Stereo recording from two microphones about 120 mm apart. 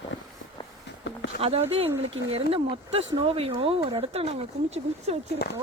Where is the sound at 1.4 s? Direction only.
55° right (ahead or behind).